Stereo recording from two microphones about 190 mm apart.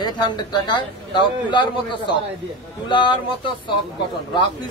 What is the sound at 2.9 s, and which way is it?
Speech, 25° left (ahead or behind).